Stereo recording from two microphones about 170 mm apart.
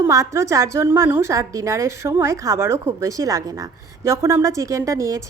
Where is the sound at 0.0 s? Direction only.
15° right (ahead or behind).